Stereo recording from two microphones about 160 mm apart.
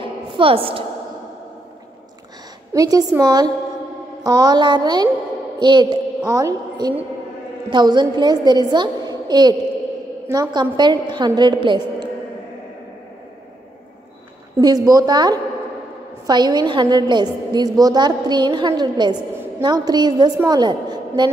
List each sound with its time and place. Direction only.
0.0 s a sound: 35° right (ahead or behind)
2.7 s a woman's voice: 25° right (ahead or behind)
14.6 s a woman's voice: 25° right (ahead or behind)